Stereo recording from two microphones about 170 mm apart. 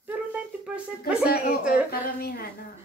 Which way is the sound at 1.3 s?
60° left (ahead or behind).